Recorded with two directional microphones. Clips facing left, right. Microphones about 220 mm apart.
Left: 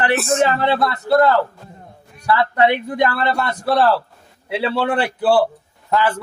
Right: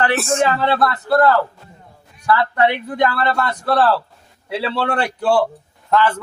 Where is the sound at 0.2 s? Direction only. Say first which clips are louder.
Left 1 dB; centre (ahead or behind).